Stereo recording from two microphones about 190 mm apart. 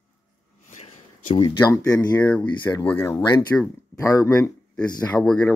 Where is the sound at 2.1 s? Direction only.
10° left (ahead or behind).